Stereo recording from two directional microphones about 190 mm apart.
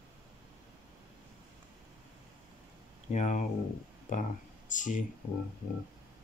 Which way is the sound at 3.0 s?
40° left (ahead or behind).